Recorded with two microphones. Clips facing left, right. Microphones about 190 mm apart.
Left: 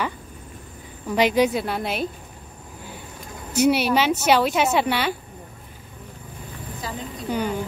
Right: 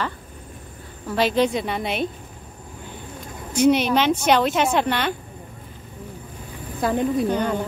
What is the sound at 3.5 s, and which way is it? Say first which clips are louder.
A woman's voice: right 1 dB; 10° left (ahead or behind).